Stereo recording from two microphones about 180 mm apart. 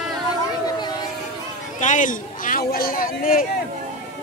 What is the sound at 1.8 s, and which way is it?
Speech, 45° left (ahead or behind).